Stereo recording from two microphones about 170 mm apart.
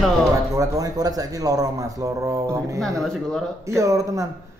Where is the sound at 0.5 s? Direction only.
20° right (ahead or behind).